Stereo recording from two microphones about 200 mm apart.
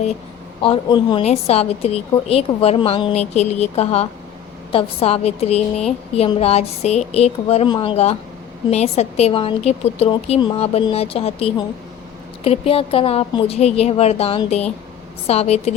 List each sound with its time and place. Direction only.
0.6 s a woman's voice: 25° left (ahead or behind)